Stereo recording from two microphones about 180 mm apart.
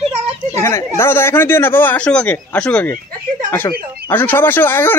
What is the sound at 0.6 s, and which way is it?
Speech, 15° left (ahead or behind).